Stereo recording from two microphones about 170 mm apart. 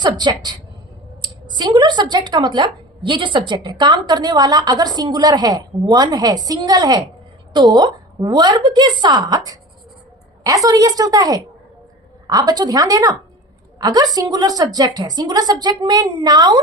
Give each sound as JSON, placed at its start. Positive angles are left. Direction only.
{"t": 0.0, "sound": "speech", "side_deg": -25}